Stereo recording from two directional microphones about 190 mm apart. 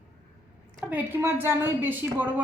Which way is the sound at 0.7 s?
10° right (ahead or behind).